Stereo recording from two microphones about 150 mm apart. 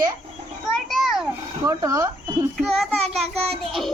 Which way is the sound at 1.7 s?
25° right (ahead or behind).